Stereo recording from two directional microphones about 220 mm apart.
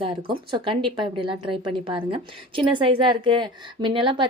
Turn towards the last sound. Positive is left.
turn(degrees=-20)  # may be behind; listen again after turning